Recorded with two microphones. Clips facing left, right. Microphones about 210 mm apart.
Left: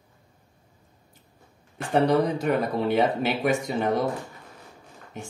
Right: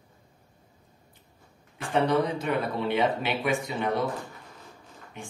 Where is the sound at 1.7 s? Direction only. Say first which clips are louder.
Left 3 dB; 40° left (ahead or behind).